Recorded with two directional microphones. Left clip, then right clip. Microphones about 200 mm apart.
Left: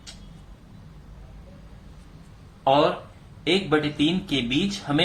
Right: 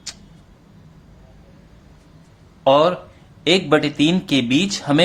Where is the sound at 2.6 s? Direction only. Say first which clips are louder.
Right 5 dB; 50° right (ahead or behind).